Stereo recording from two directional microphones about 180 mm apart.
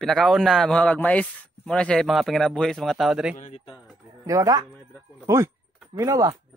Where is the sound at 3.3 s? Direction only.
40° left (ahead or behind).